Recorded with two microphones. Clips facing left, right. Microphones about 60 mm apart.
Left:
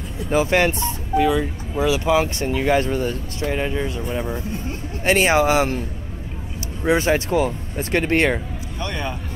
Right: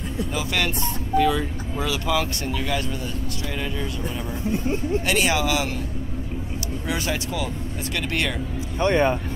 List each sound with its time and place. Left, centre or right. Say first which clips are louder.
0.3 s speech: left 10 dB; left
1.1 s speech: left 2 dB; centre; by 5.8 s left
6.8 s speech: left 10 dB; left
8.7 s speech: right 9 dB; right